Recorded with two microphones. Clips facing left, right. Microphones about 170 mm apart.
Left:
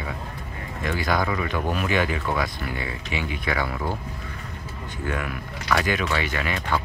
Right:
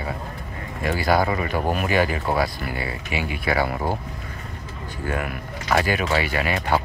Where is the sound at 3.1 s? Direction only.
5° right (ahead or behind).